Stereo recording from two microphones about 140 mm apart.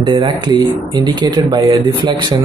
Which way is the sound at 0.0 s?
35° right (ahead or behind).